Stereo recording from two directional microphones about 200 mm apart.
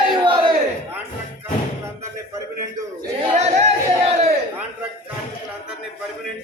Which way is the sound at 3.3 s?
35° right (ahead or behind).